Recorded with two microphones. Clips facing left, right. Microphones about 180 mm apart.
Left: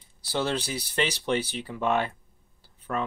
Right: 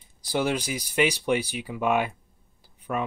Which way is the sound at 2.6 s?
15° right (ahead or behind).